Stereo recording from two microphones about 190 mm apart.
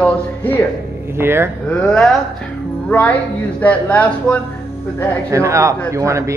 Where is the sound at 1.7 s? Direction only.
5° left (ahead or behind).